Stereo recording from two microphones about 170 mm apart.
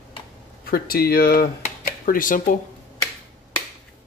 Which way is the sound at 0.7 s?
60° left (ahead or behind).